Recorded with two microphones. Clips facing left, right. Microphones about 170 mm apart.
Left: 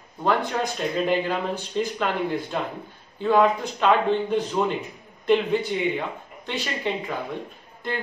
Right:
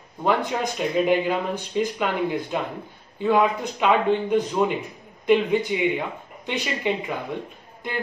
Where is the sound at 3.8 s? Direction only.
15° right (ahead or behind).